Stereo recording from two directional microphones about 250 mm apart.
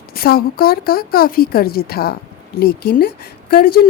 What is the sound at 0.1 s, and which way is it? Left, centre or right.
A woman's voice, left.